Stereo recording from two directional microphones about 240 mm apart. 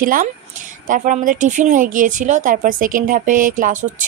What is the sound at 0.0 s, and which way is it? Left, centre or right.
A woman's voice, right.